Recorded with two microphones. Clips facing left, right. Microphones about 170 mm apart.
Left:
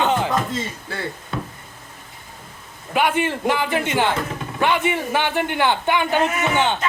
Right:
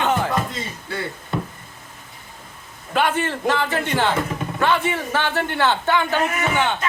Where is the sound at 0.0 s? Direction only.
20° left (ahead or behind).